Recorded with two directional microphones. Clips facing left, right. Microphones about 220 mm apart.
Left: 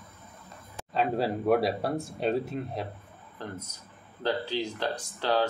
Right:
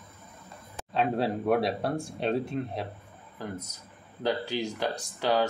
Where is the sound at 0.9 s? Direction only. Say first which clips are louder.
Even; centre (ahead or behind).